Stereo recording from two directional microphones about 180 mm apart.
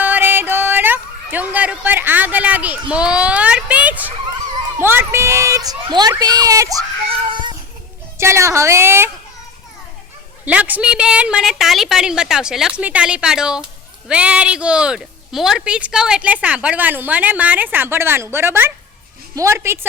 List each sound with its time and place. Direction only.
0.0 s yodeling: 10° right (ahead or behind)
4.8 s a woman's voice: 10° right (ahead or behind)
7.1 s baby cry: 25° right (ahead or behind)
8.2 s a woman's voice: 15° right (ahead or behind)
10.4 s a woman's voice: 10° right (ahead or behind)